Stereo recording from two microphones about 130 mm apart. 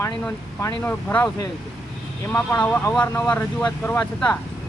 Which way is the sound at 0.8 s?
15° left (ahead or behind).